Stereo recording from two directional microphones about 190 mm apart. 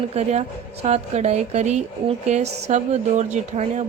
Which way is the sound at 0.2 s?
35° right (ahead or behind).